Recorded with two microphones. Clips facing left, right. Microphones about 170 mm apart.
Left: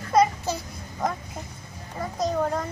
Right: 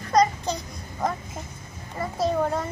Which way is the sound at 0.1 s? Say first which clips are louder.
Even; 5° left (ahead or behind).